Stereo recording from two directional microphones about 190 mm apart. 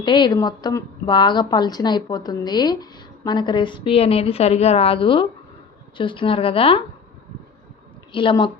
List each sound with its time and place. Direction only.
0.0 s a woman's voice: 25° left (ahead or behind)
8.1 s a woman's voice: 25° left (ahead or behind)